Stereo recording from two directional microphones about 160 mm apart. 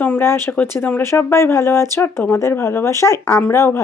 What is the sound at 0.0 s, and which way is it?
A woman's voice, 10° left (ahead or behind).